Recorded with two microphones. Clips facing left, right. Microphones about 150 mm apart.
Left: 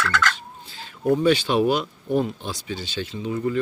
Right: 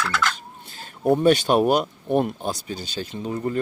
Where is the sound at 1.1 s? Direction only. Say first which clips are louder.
Right 2 dB; 50° right (ahead or behind).